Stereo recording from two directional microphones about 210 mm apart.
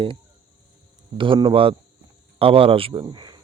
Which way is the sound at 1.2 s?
25° right (ahead or behind).